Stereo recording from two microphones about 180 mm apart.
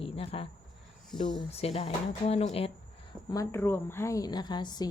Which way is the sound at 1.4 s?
35° left (ahead or behind).